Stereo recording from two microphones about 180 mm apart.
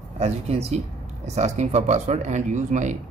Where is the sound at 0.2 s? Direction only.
35° right (ahead or behind).